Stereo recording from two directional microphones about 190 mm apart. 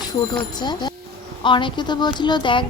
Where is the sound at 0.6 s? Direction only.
25° left (ahead or behind).